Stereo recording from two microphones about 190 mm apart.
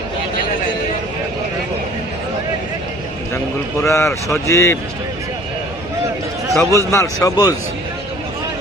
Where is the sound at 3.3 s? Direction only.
15° left (ahead or behind).